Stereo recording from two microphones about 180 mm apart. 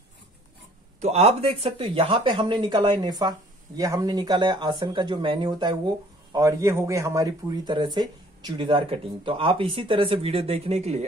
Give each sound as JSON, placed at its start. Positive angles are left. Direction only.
{"t": 1.0, "sound": "speech", "side_deg": -35}